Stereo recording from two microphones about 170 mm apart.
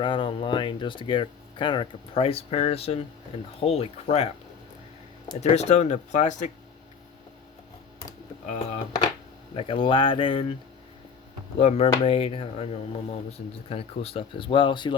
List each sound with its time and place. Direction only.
0.0 s speech: 30° left (ahead or behind)
5.4 s speech: 40° left (ahead or behind)
8.4 s speech: 40° left (ahead or behind)
9.6 s speech: 30° left (ahead or behind)
11.6 s speech: 35° left (ahead or behind)